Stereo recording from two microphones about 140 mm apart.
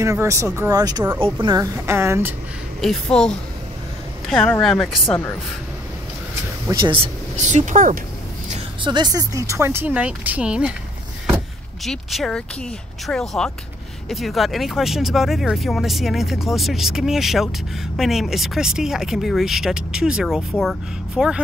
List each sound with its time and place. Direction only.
0.0 s a woman's voice: 20° right (ahead or behind)
1.9 s speech: 20° right (ahead or behind)
2.8 s speech: 5° left (ahead or behind)
5.0 s a woman's voice: 15° left (ahead or behind)
6.7 s a woman's voice: 35° right (ahead or behind)
7.3 s speech: 60° right (ahead or behind)
8.8 s speech: 30° right (ahead or behind); by 10.7 s 10° right (ahead or behind)
11.8 s speech: centre (ahead or behind)